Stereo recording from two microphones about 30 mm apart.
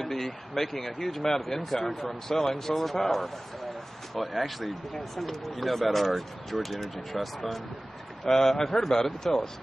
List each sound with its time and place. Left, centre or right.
0.0 s speech: centre
4.1 s speech: centre
8.3 s a man's voice: centre
8.6 s speech: centre